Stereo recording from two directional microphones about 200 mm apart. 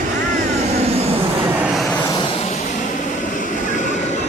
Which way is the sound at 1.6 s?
Centre (ahead or behind).